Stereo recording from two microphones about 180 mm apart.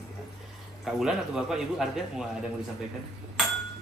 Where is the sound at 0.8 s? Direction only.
Centre (ahead or behind).